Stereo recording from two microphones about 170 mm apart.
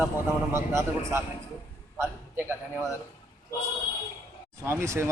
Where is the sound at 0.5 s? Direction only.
15° right (ahead or behind).